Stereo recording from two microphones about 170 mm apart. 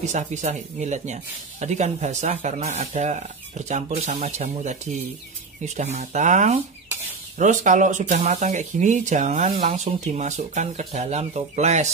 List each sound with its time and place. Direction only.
0.1 s speech: 45° right (ahead or behind)
5.8 s speech: 40° right (ahead or behind)